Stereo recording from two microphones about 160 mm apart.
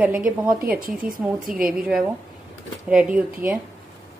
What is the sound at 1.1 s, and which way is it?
Speech, 60° right (ahead or behind).